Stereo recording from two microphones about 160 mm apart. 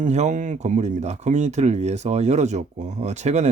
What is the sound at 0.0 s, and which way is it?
Speech, 45° right (ahead or behind).